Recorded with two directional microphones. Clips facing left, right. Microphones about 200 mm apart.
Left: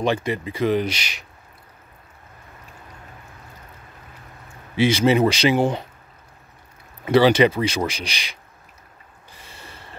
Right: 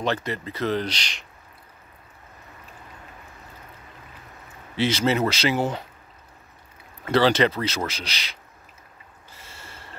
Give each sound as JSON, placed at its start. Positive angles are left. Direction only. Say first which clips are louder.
{"t": 0.0, "sound": "speech", "louder": "left 4 dB", "side_deg": 15}
{"t": 4.7, "sound": "speech", "louder": "left 5 dB", "side_deg": 10}
{"t": 7.1, "sound": "speech", "louder": "left 4 dB", "side_deg": 10}
{"t": 9.3, "sound": "a sound", "louder": "left 2 dB", "side_deg": 15}